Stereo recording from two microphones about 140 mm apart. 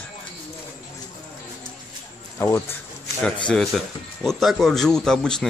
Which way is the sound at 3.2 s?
5° left (ahead or behind).